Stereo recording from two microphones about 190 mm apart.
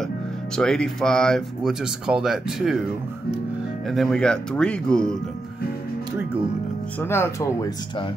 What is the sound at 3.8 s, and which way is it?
Speech, centre (ahead or behind).